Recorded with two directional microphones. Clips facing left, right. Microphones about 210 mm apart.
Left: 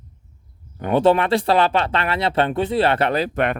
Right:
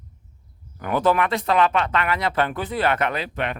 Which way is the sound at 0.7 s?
25° left (ahead or behind).